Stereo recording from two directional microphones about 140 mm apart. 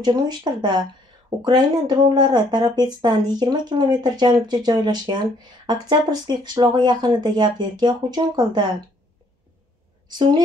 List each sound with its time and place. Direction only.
0.0 s speech: 30° right (ahead or behind)
10.0 s a woman's voice: 30° right (ahead or behind)